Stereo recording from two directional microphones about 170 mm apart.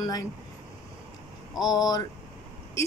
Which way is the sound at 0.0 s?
20° left (ahead or behind).